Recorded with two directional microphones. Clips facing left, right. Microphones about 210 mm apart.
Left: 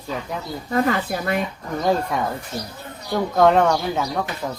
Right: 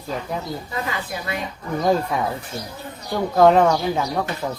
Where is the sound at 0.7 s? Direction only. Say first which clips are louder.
Left 10 dB; 55° left (ahead or behind).